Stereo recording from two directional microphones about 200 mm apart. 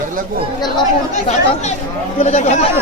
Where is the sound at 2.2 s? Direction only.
35° left (ahead or behind).